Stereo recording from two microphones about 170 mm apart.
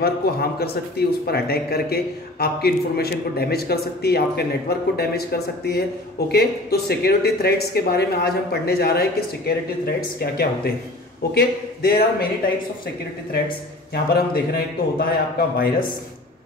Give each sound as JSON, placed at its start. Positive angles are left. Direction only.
{"t": 0.0, "sound": "a man's voice", "side_deg": 65}
{"t": 14.1, "sound": "a man's voice", "side_deg": 65}